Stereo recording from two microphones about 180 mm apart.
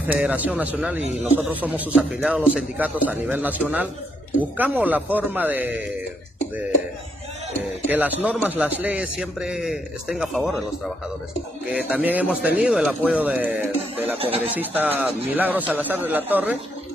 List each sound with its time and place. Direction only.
0.0 s a man's voice: 10° right (ahead or behind)
7.9 s a man's voice: 10° right (ahead or behind)
11.7 s a man's voice: 10° right (ahead or behind)
14.1 s speech: 35° right (ahead or behind)
14.5 s a man's voice: 10° right (ahead or behind)